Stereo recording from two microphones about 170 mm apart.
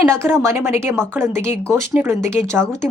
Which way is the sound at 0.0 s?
15° right (ahead or behind).